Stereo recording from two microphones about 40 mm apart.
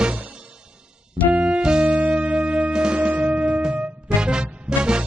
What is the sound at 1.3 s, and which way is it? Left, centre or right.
Keyboard, right.